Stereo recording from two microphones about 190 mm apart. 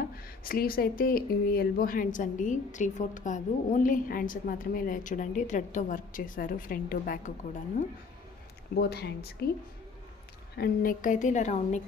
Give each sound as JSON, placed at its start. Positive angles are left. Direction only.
{"t": 0.4, "sound": "speech", "side_deg": 50}
{"t": 8.7, "sound": "speech", "side_deg": 60}
{"t": 10.6, "sound": "speech", "side_deg": 50}